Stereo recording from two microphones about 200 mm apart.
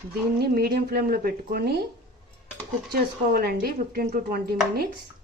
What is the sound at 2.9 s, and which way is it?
Speech, 50° right (ahead or behind).